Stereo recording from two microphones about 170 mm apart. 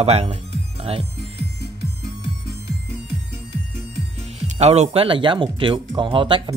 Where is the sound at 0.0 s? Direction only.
35° right (ahead or behind).